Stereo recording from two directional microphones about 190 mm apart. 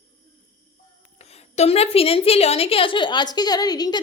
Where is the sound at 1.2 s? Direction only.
35° left (ahead or behind).